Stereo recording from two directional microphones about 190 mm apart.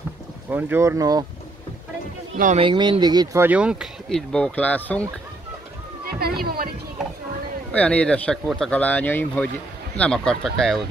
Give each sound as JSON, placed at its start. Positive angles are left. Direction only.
{"t": 0.5, "sound": "speech", "side_deg": -10}
{"t": 2.3, "sound": "speech", "side_deg": -45}
{"t": 2.6, "sound": "speech", "side_deg": -25}
{"t": 3.4, "sound": "speech", "side_deg": -5}
{"t": 6.0, "sound": "a sound", "side_deg": -55}
{"t": 6.4, "sound": "speech", "side_deg": -50}
{"t": 7.7, "sound": "speech", "side_deg": 5}